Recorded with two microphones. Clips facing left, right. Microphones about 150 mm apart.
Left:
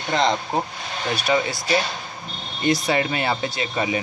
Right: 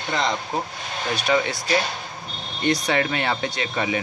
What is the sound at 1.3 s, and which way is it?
Speech, 10° left (ahead or behind).